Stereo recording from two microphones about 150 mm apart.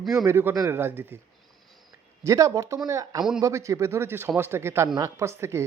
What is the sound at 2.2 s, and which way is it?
A woman's voice, 20° right (ahead or behind).